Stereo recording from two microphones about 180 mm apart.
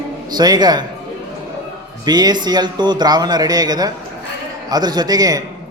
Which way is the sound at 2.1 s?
20° right (ahead or behind).